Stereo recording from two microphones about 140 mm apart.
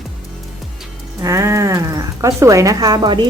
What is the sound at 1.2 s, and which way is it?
Speech, 20° right (ahead or behind).